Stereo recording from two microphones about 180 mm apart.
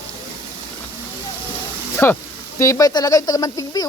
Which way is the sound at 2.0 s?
10° left (ahead or behind).